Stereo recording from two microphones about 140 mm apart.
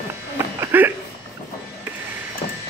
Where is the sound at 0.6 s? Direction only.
15° right (ahead or behind).